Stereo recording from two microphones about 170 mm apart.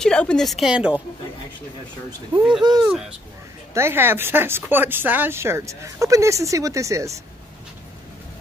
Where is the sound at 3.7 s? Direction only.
15° right (ahead or behind).